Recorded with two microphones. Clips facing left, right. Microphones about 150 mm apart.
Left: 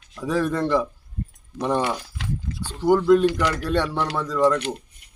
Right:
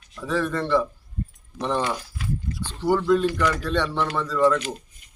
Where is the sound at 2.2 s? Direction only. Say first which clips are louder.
Even; 80° left.